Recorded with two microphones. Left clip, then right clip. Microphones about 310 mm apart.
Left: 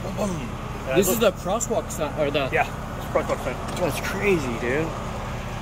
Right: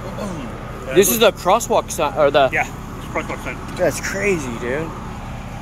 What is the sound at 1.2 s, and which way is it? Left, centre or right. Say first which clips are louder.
Speech: right 8 dB; centre.